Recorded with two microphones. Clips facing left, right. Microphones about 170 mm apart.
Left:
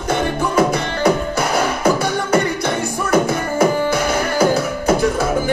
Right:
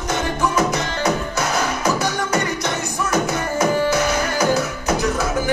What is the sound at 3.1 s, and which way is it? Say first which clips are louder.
Music: left 5 dB; 30° left (ahead or behind).